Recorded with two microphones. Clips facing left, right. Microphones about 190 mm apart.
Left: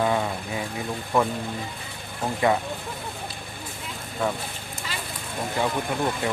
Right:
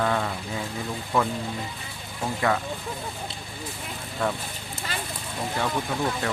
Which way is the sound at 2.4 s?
20° left (ahead or behind).